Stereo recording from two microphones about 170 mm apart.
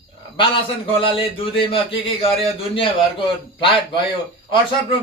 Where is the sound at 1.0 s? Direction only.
35° left (ahead or behind).